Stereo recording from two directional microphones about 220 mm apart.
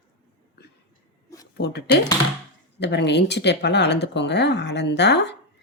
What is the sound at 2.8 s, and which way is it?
Speech, 50° left (ahead or behind).